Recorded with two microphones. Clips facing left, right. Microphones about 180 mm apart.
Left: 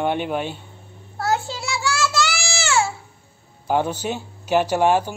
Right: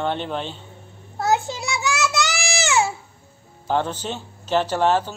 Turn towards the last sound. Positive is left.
turn(degrees=10)  # may be behind; listen again after turning